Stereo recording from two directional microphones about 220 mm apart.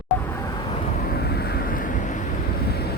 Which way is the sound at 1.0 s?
45° left (ahead or behind).